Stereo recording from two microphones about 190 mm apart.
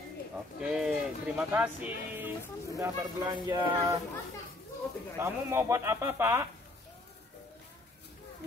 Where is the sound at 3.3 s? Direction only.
20° right (ahead or behind).